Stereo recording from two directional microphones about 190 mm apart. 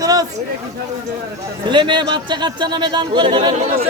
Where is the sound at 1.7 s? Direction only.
25° right (ahead or behind).